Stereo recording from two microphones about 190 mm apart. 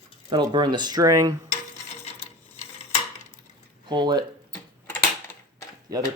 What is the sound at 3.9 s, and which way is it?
Speech, 25° right (ahead or behind).